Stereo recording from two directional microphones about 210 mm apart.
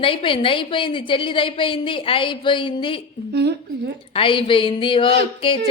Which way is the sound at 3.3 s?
55° right (ahead or behind).